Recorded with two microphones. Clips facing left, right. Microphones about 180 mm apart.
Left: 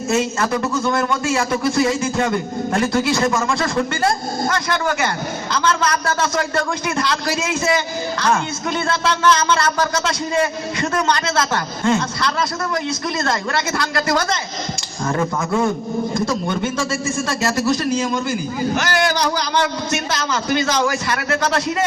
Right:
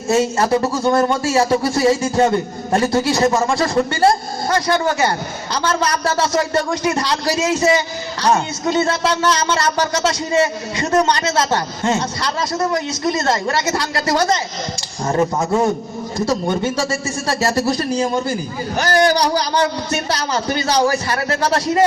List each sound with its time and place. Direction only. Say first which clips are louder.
0.1 s a woman's voice: right 4 dB; 30° right (ahead or behind)
17.4 s a man's voice: right 1 dB; 40° right (ahead or behind)